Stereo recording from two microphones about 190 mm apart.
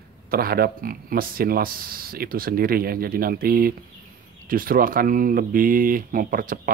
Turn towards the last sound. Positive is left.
turn(degrees=-45)  # may be behind; listen again after turning